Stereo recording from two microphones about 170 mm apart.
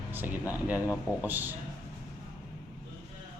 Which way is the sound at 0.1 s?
10° right (ahead or behind).